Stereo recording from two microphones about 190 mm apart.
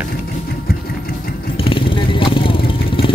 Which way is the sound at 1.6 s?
25° left (ahead or behind).